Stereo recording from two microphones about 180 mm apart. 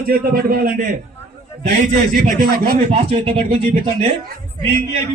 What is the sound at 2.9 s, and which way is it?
Speech, 35° right (ahead or behind).